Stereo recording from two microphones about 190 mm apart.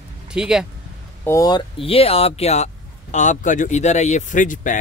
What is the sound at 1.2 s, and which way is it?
Speech, 15° left (ahead or behind).